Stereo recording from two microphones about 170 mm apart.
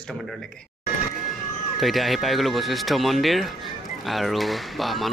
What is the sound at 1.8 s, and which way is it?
A man's voice, centre (ahead or behind).